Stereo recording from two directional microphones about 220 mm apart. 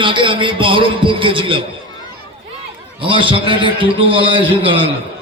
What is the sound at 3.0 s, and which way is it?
A man's voice, 20° right (ahead or behind).